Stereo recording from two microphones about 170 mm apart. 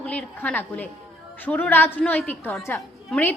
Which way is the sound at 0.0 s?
5° left (ahead or behind).